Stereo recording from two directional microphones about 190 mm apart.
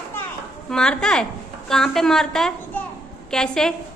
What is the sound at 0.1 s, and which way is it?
Children playing, 5° left (ahead or behind).